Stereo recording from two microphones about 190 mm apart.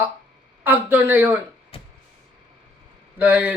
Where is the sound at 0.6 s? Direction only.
10° right (ahead or behind).